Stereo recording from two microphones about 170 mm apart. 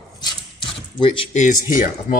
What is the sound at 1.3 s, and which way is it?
Speech, 45° left (ahead or behind).